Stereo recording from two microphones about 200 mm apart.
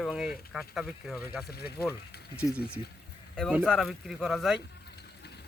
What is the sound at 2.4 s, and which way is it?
Speech, 5° right (ahead or behind).